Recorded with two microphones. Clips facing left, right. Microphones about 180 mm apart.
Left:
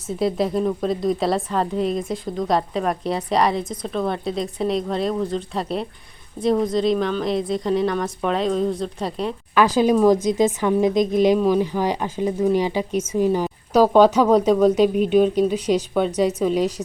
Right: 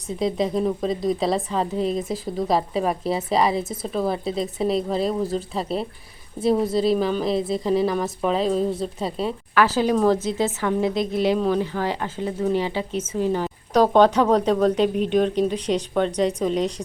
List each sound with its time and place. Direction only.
0.2 s a woman's voice: centre (ahead or behind)
9.6 s speech: 15° left (ahead or behind)